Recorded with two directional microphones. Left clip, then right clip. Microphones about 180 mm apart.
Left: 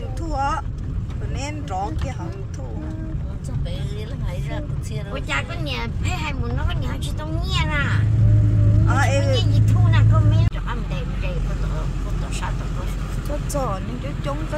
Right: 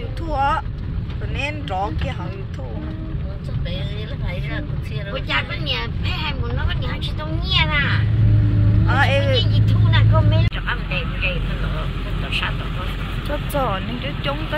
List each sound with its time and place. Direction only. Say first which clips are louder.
0.3 s speech: right 4 dB; 5° left (ahead or behind)
5.3 s speech: right 4 dB; 20° left (ahead or behind)
7.4 s speech: right 6 dB; 25° left (ahead or behind)
8.8 s speech: right 3 dB; 5° left (ahead or behind)
9.9 s speech: right 6 dB; 35° left (ahead or behind)
13.5 s speech: right 3 dB; 5° right (ahead or behind)